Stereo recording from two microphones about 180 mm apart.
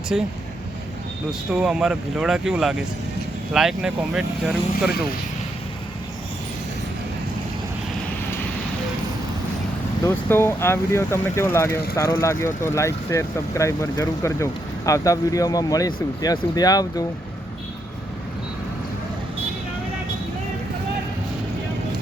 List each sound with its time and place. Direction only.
0.1 s speech: centre (ahead or behind)
1.3 s speech: 5° right (ahead or behind)
10.1 s speech: 10° left (ahead or behind)